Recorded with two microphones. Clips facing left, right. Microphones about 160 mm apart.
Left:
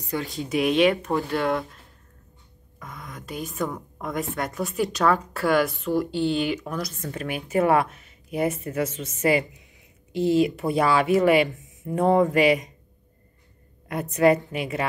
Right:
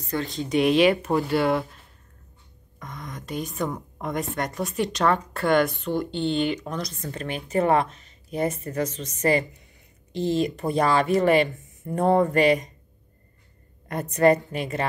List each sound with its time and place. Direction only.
0.1 s a woman's voice: 10° left (ahead or behind)
2.8 s a woman's voice: 5° left (ahead or behind)
13.8 s a woman's voice: centre (ahead or behind)